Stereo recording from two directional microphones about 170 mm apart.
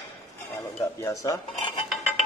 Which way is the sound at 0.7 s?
15° left (ahead or behind).